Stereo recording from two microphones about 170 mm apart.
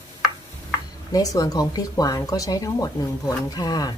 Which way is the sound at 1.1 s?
20° left (ahead or behind).